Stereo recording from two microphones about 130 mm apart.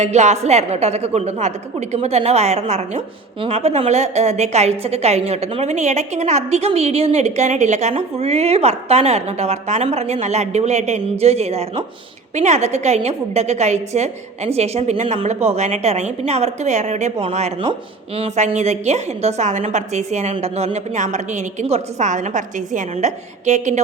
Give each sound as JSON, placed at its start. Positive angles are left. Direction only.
{"t": 0.0, "sound": "a woman's voice", "side_deg": -60}
{"t": 17.2, "sound": "speech", "side_deg": -50}
{"t": 18.3, "sound": "a woman's voice", "side_deg": -65}
{"t": 20.3, "sound": "a woman's voice", "side_deg": -45}